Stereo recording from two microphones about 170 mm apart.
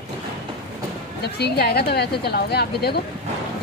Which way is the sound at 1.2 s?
70° left (ahead or behind).